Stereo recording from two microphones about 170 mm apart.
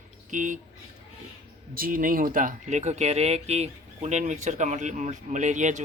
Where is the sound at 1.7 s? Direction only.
55° right (ahead or behind).